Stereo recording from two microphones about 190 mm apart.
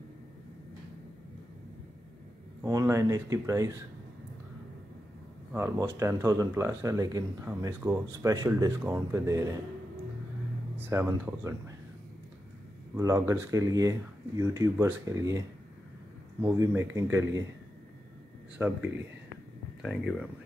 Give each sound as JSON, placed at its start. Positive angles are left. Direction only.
{"t": 2.6, "sound": "speech", "side_deg": -15}
{"t": 5.5, "sound": "speech", "side_deg": -10}
{"t": 10.8, "sound": "speech", "side_deg": -15}
{"t": 12.9, "sound": "speech", "side_deg": -15}
{"t": 18.6, "sound": "speech", "side_deg": -10}
{"t": 19.8, "sound": "speech", "side_deg": 0}